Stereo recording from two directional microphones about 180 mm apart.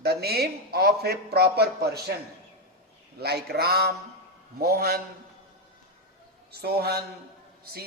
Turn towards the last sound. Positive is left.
turn(degrees=-60)  # may be behind; listen again after turning